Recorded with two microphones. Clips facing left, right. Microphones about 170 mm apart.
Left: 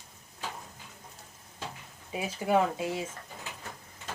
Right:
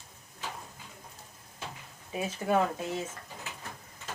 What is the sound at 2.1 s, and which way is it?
Speech, 15° left (ahead or behind).